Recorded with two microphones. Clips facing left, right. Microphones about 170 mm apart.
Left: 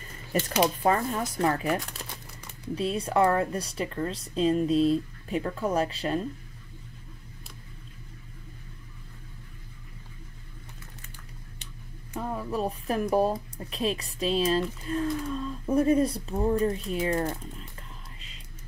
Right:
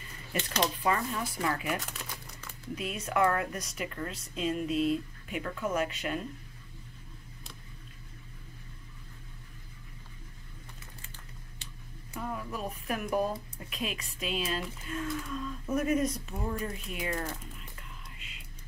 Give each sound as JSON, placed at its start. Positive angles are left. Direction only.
{"t": 0.0, "sound": "a sound", "side_deg": 45}
{"t": 0.8, "sound": "speech", "side_deg": 40}
{"t": 11.6, "sound": "speech", "side_deg": 30}